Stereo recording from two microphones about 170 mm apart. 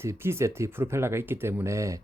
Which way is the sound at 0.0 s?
15° right (ahead or behind).